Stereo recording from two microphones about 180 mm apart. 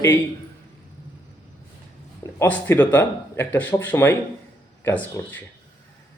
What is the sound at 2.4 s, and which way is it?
Speech, 10° left (ahead or behind).